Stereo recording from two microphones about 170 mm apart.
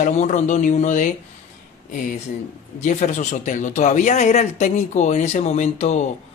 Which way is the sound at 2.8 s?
45° left (ahead or behind).